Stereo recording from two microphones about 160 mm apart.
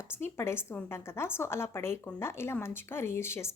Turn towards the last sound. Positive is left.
turn(degrees=15)  # may be behind; listen again after turning